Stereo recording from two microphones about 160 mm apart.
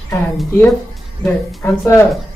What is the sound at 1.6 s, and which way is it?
Speech, 15° left (ahead or behind).